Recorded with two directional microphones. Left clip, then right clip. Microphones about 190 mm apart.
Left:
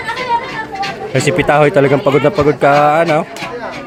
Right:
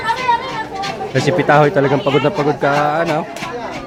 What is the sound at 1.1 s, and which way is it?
Speech, 15° left (ahead or behind).